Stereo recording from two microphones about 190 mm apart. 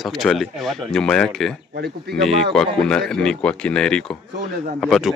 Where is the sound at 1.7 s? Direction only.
55° right (ahead or behind).